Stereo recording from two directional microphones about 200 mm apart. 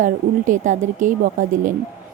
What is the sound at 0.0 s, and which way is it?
Speech, 40° right (ahead or behind).